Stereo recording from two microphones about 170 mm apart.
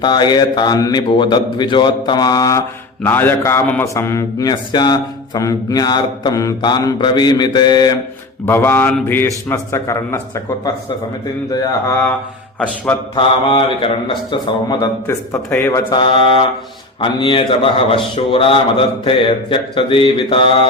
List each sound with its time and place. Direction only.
0.0 s a man's voice: 25° left (ahead or behind)
8.4 s a man's voice: 15° left (ahead or behind)
11.5 s a man's voice: 20° left (ahead or behind)
12.5 s speech: 10° left (ahead or behind)
13.1 s a man's voice: 30° left (ahead or behind); by 15.8 s 10° left (ahead or behind)
15.9 s a man's voice: 30° left (ahead or behind)